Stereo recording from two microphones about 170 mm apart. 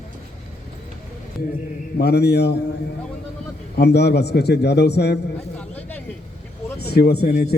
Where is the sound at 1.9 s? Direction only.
75° left (ahead or behind).